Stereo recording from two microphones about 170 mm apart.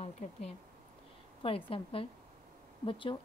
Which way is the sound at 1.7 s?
35° left (ahead or behind).